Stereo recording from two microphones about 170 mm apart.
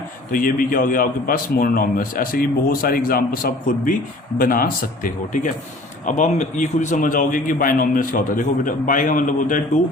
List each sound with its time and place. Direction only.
0.3 s a man's voice: 55° left (ahead or behind)